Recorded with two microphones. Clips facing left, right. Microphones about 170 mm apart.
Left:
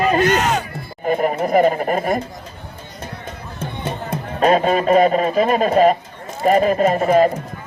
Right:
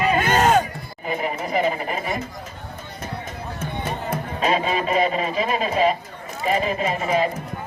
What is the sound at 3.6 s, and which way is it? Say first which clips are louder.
Music: left 2 dB; 30° left (ahead or behind).